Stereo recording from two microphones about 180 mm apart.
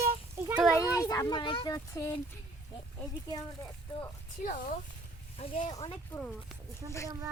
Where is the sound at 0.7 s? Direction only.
15° left (ahead or behind).